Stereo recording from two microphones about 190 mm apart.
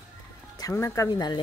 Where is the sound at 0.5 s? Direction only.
15° left (ahead or behind).